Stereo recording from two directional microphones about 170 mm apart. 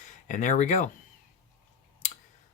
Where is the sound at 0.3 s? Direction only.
50° left (ahead or behind).